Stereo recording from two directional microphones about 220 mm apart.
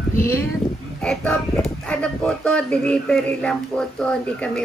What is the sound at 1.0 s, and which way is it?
A woman's voice, 5° left (ahead or behind).